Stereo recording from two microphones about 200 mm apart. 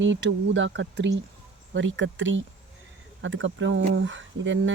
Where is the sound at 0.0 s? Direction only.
65° right (ahead or behind).